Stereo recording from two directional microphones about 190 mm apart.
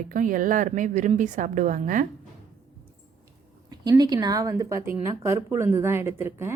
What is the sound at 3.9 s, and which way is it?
Speech, 20° right (ahead or behind).